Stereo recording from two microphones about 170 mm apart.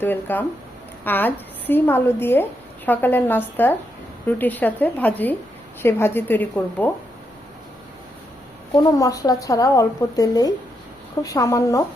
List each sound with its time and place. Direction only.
0.0 s a woman's voice: 10° left (ahead or behind)
8.7 s a woman's voice: 20° left (ahead or behind)